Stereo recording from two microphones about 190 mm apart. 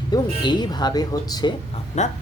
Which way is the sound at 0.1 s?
20° left (ahead or behind).